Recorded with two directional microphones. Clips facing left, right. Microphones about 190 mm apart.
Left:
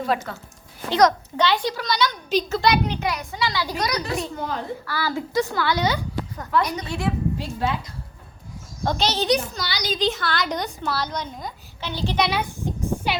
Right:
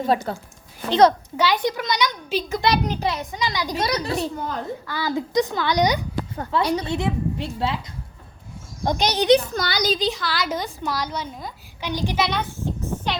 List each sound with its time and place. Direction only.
0.0 s a child's voice: 30° right (ahead or behind)
2.6 s a child's voice: 40° right (ahead or behind)
3.1 s a woman's voice: 20° right (ahead or behind)
3.8 s a child's voice: 30° right (ahead or behind)
4.9 s a child's voice: 20° right (ahead or behind)
6.3 s a woman's voice: 30° right (ahead or behind)
8.8 s a child's voice: 15° right (ahead or behind)
9.6 s a woman's voice: 50° right (ahead or behind)
10.1 s a woman's voice: centre (ahead or behind)
12.2 s a sound: 10° left (ahead or behind)